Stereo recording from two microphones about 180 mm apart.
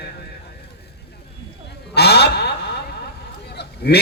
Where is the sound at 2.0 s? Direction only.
65° left (ahead or behind).